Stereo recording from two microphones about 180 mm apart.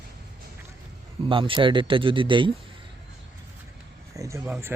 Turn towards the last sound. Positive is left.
turn(degrees=-10)  # may be behind; listen again after turning